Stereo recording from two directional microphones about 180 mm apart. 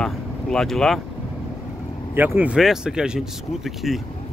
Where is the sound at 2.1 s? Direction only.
10° right (ahead or behind).